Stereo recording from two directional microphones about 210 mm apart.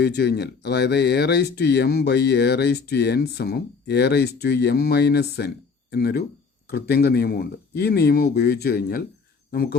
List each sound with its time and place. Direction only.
0.0 s speech: 50° left (ahead or behind)